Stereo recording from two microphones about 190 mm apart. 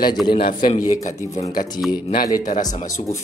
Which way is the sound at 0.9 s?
40° left (ahead or behind).